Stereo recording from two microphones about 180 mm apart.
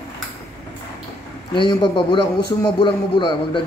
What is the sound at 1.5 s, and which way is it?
A man's voice, 25° left (ahead or behind).